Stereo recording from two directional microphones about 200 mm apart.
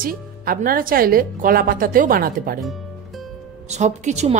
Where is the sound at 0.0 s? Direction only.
45° right (ahead or behind).